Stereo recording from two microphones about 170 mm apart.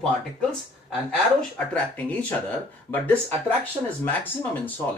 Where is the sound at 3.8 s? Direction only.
20° right (ahead or behind).